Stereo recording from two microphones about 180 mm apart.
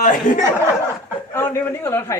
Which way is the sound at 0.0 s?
50° left (ahead or behind).